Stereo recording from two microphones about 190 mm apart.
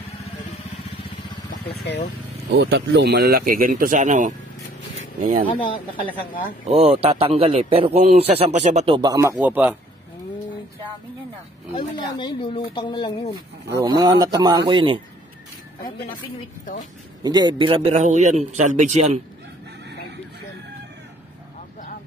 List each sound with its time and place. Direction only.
2.5 s speech: 65° right (ahead or behind); by 5.5 s 45° right (ahead or behind)
6.8 s a man's voice: 30° right (ahead or behind); by 9.8 s 10° right (ahead or behind)
11.7 s speech: 25° left (ahead or behind)
13.7 s a man's voice: 20° right (ahead or behind)
17.2 s a man's voice: 20° right (ahead or behind); by 19.2 s 40° right (ahead or behind)